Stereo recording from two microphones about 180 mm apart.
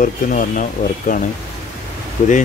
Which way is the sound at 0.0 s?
45° left (ahead or behind).